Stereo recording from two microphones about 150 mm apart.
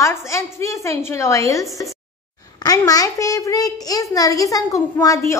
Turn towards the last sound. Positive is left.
turn(degrees=20)  # may be behind; listen again after turning